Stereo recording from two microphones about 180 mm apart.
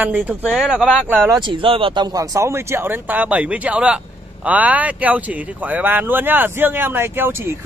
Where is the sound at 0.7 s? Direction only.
5° left (ahead or behind).